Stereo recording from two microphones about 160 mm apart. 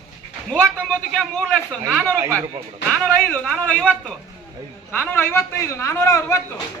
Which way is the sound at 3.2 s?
5° left (ahead or behind).